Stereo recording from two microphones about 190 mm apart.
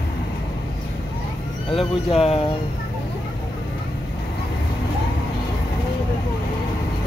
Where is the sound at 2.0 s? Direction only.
30° left (ahead or behind).